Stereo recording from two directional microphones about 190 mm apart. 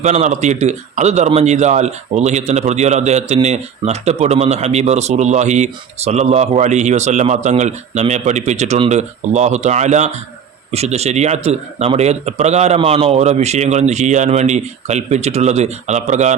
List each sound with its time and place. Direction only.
0.0 s a man's voice: 35° right (ahead or behind)